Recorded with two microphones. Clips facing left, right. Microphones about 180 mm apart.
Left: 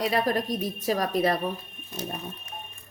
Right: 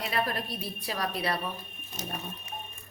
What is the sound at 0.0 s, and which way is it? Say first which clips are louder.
A woman's voice: left 6 dB; 40° left (ahead or behind).